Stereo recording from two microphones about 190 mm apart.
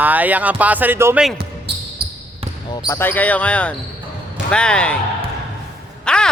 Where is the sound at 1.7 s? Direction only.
60° right (ahead or behind).